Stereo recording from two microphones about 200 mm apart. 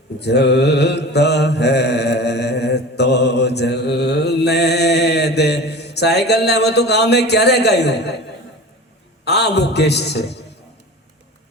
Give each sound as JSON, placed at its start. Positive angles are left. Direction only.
{"t": 0.2, "sound": "mantra", "side_deg": 55}
{"t": 9.2, "sound": "a man's voice", "side_deg": 55}